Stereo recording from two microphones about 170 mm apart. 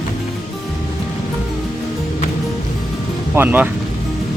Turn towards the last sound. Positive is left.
turn(degrees=-10)  # may be behind; listen again after turning